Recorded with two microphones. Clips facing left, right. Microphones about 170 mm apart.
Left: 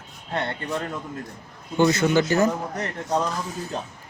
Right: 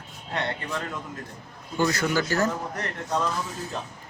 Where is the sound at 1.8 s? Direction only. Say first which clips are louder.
Left 5 dB; 20° left (ahead or behind).